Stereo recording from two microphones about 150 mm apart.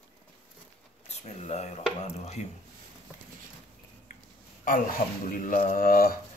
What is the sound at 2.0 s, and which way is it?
Speech, 50° left (ahead or behind).